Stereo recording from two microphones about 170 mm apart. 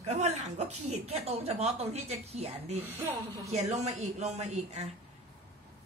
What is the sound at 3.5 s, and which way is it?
A woman's voice, 40° right (ahead or behind).